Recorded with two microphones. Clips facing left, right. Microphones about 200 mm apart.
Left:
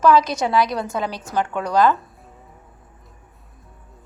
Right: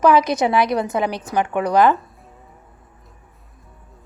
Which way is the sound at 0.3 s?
20° right (ahead or behind).